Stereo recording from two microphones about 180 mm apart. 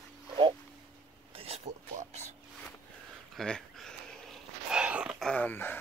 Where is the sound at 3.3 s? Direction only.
5° left (ahead or behind).